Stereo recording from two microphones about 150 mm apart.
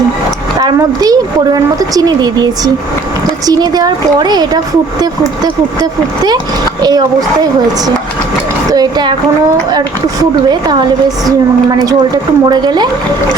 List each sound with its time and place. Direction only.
0.6 s a woman's voice: 25° right (ahead or behind)
8.7 s a woman's voice: 25° right (ahead or behind)
10.5 s a woman's voice: 30° right (ahead or behind)